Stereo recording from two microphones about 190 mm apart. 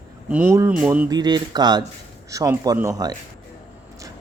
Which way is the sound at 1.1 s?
20° right (ahead or behind).